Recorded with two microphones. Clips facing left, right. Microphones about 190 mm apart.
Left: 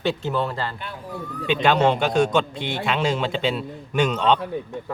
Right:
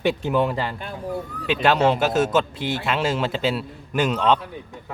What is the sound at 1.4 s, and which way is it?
A man's voice, 5° right (ahead or behind).